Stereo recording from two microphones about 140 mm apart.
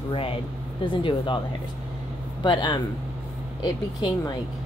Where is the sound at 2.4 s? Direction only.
35° left (ahead or behind).